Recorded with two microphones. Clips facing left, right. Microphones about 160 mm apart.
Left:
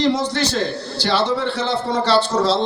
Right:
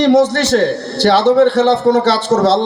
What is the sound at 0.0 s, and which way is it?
A man's voice, 65° right (ahead or behind).